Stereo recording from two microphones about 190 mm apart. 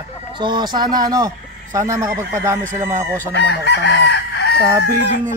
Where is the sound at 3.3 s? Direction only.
65° left (ahead or behind).